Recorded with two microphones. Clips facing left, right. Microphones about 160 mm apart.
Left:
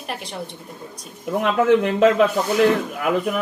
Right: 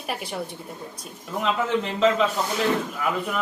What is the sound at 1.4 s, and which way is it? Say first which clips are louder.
Speech: left 7 dB; 55° left (ahead or behind).